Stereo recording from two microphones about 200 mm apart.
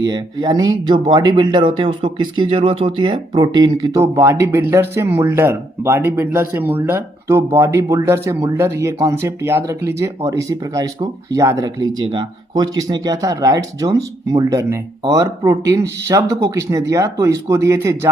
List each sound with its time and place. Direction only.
0.0 s speech: 20° right (ahead or behind)